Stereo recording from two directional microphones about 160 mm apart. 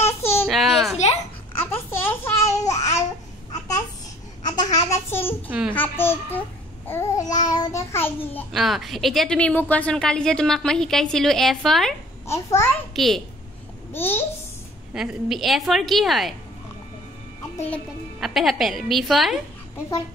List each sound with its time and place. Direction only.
0.0 s a sound: 15° left (ahead or behind)
0.5 s a sound: centre (ahead or behind)
1.5 s babbling: 15° left (ahead or behind)
4.5 s a sound: 25° left (ahead or behind)
5.8 s a child's voice: 15° left (ahead or behind)
6.9 s babbling: 20° left (ahead or behind)
8.5 s a woman's voice: centre (ahead or behind)
12.3 s a child's voice: 15° left (ahead or behind)
12.9 s a woman's voice: centre (ahead or behind)
13.9 s a child's voice: 15° left (ahead or behind)
15.0 s a woman's voice: centre (ahead or behind)
18.2 s a woman's voice: centre (ahead or behind)